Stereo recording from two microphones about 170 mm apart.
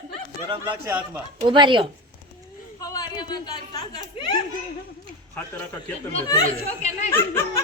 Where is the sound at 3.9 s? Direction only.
25° left (ahead or behind).